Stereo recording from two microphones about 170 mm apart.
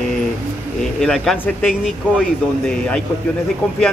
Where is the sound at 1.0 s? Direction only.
5° left (ahead or behind).